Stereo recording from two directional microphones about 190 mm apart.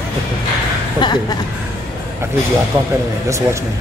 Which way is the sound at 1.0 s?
20° left (ahead or behind).